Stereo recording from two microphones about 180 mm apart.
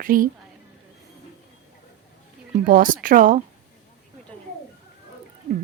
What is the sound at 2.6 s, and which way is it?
Speech, 50° right (ahead or behind).